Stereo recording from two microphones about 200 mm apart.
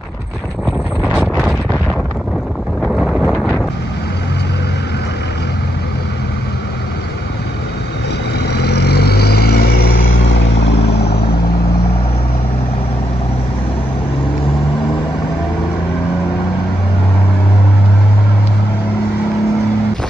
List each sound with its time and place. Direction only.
2.8 s wind noise: centre (ahead or behind)
8.5 s vehicle: 55° left (ahead or behind)